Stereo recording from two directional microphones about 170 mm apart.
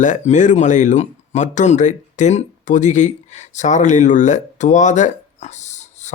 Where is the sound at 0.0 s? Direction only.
45° left (ahead or behind).